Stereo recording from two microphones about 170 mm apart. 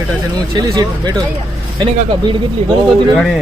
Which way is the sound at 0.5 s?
25° right (ahead or behind).